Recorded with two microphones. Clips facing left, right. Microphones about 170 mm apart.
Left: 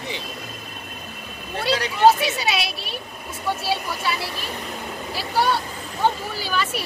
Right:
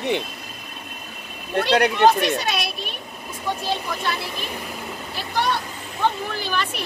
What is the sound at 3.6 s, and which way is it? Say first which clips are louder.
Speech: even; 5° left (ahead or behind).